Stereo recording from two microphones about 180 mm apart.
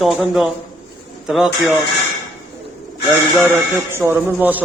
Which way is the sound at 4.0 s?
10° right (ahead or behind).